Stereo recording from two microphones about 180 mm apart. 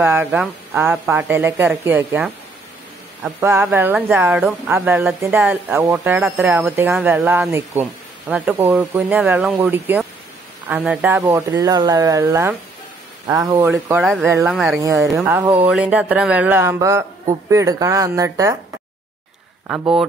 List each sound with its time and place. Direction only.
0.0 s speech: 10° right (ahead or behind)
3.3 s speech: 10° right (ahead or behind)
11.2 s speech: 20° right (ahead or behind)
14.5 s speech: centre (ahead or behind)
14.8 s speech: 15° right (ahead or behind)